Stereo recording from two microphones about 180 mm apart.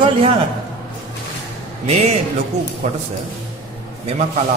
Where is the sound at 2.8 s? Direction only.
40° right (ahead or behind).